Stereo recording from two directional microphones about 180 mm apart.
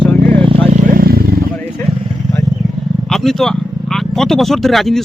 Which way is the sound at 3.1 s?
Centre (ahead or behind).